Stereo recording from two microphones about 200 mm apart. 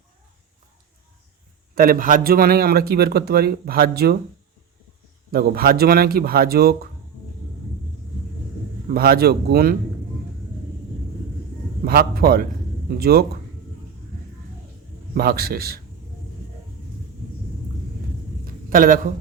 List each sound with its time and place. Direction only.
1.7 s a man's voice: 45° right (ahead or behind)
5.3 s a man's voice: 50° right (ahead or behind)
8.9 s a man's voice: 50° right (ahead or behind)
11.9 s a man's voice: 50° right (ahead or behind)
15.1 s a man's voice: 50° right (ahead or behind)
18.4 s a sound: 45° right (ahead or behind)